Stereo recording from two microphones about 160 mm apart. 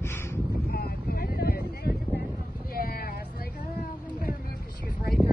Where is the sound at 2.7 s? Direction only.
65° left (ahead or behind).